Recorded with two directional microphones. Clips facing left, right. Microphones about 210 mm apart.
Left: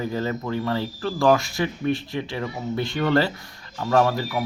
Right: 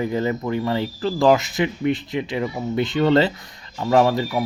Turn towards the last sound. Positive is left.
turn(degrees=-20)  # may be behind; listen again after turning